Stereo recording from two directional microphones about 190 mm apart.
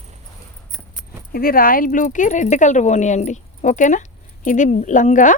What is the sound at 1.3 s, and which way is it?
Speech, 50° left (ahead or behind).